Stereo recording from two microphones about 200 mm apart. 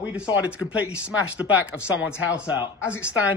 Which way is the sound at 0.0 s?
5° right (ahead or behind).